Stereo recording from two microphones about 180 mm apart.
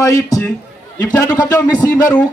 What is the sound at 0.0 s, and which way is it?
A man's voice, 20° left (ahead or behind).